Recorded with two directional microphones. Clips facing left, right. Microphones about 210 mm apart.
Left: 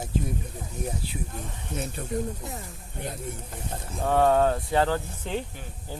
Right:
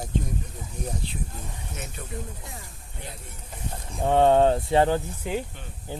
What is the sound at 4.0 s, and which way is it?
Speech, 20° right (ahead or behind).